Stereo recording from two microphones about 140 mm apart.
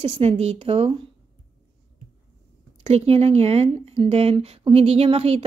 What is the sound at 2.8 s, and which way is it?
A woman's voice, 45° right (ahead or behind).